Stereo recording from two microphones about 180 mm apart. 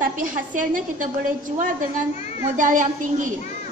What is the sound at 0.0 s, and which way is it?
A woman's voice, 45° right (ahead or behind).